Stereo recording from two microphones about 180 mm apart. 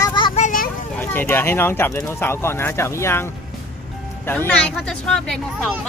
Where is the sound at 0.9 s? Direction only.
10° left (ahead or behind).